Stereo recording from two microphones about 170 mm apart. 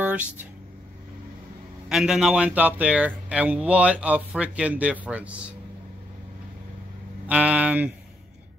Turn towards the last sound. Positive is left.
turn(degrees=-10)  # may be behind; listen again after turning